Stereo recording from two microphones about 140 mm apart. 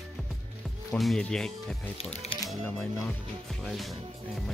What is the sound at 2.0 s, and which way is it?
Speech, 50° left (ahead or behind).